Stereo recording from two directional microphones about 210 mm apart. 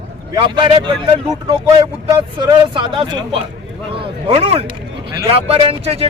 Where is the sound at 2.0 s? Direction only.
25° right (ahead or behind).